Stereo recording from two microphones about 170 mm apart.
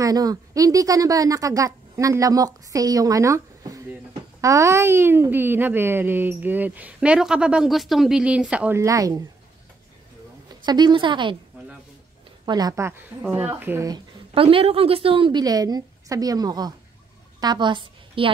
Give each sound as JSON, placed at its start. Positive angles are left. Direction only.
{"t": 0.0, "sound": "a woman's voice", "side_deg": -20}
{"t": 10.6, "sound": "a woman's voice", "side_deg": -25}
{"t": 11.6, "sound": "a sound", "side_deg": -10}
{"t": 12.4, "sound": "a woman's voice", "side_deg": -20}
{"t": 14.3, "sound": "a woman's voice", "side_deg": -35}